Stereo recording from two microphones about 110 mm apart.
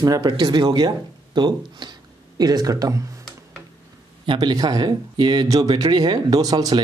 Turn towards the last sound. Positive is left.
turn(degrees=-35)  # may be behind; listen again after turning